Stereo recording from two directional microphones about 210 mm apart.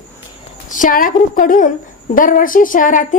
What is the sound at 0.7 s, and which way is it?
A woman's voice, 40° left (ahead or behind).